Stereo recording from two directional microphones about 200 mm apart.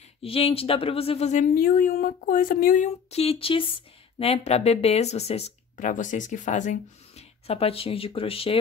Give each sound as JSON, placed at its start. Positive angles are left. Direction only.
{"t": 0.2, "sound": "speech", "side_deg": 30}